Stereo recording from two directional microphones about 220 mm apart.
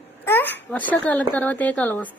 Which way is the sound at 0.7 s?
5° left (ahead or behind).